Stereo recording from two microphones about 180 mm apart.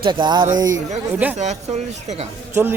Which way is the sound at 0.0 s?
25° right (ahead or behind).